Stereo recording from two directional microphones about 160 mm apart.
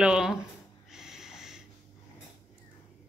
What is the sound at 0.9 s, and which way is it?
Snort, 5° right (ahead or behind).